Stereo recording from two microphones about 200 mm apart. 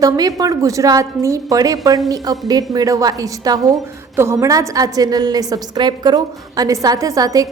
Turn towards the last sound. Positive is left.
turn(degrees=-15)  # may be behind; listen again after turning